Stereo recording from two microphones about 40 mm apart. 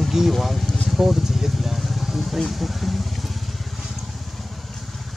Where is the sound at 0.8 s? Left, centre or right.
Centre.